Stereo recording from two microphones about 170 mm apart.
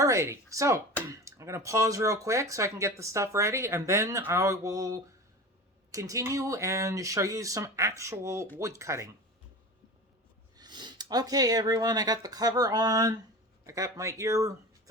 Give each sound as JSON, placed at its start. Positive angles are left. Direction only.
{"t": 0.0, "sound": "speech", "side_deg": -15}
{"t": 10.6, "sound": "speech", "side_deg": -25}